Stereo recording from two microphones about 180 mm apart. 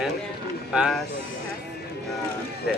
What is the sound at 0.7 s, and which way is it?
Speech, 5° right (ahead or behind).